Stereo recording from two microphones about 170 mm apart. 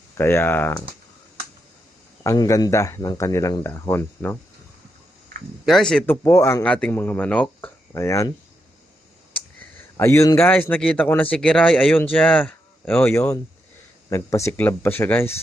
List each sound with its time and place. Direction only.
0.2 s speech: 15° left (ahead or behind)
2.2 s speech: 20° left (ahead or behind)
5.6 s speech: centre (ahead or behind)
10.0 s speech: 15° left (ahead or behind)